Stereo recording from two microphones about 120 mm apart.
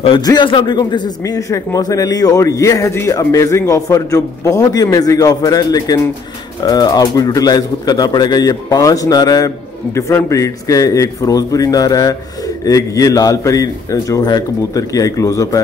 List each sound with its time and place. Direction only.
0.2 s speech: 35° left (ahead or behind)